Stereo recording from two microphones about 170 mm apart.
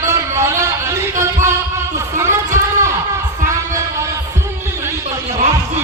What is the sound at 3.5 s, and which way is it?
Music, 15° right (ahead or behind).